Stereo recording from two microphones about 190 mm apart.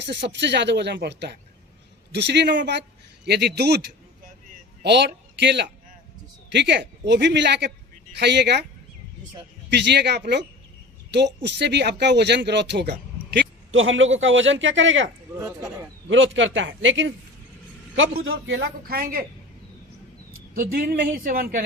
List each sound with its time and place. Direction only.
0.0 s speech: 65° right (ahead or behind)
4.8 s a man's voice: 60° right (ahead or behind)
9.6 s speech: 65° right (ahead or behind); by 15.1 s 80° right
15.4 s speech: 15° right (ahead or behind)
16.0 s a man's voice: 75° right (ahead or behind)
18.8 s speech: 50° right (ahead or behind)
20.6 s speech: 50° right (ahead or behind)